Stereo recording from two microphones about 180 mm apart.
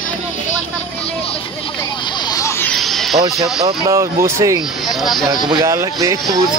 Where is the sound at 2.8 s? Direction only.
Centre (ahead or behind).